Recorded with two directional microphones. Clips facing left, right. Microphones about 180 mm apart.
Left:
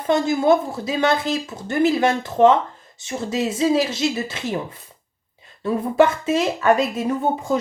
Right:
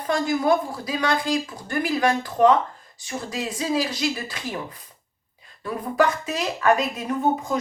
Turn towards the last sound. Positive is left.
turn(degrees=30)  # may be behind; listen again after turning